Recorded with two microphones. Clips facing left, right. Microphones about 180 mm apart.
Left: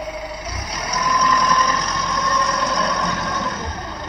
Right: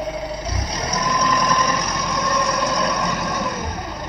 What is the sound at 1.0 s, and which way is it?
Vehicle, 20° right (ahead or behind).